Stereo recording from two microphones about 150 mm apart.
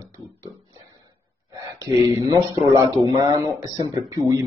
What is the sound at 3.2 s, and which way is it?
Speech, 25° right (ahead or behind).